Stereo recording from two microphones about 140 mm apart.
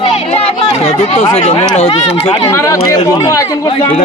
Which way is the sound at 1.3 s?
45° left (ahead or behind).